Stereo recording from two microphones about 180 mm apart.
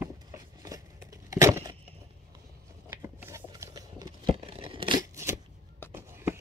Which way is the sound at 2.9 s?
15° right (ahead or behind).